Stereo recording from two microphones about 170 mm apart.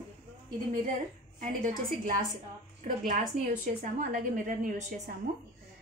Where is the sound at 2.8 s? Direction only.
50° right (ahead or behind).